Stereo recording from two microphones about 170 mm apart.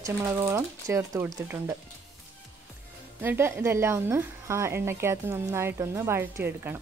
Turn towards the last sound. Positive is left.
turn(degrees=-15)  # may be behind; listen again after turning